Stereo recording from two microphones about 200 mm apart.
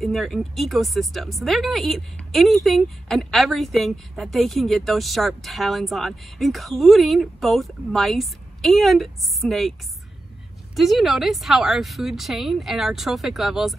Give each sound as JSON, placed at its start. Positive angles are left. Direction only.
{"t": 0.0, "sound": "speech", "side_deg": 0}
{"t": 10.8, "sound": "speech", "side_deg": 0}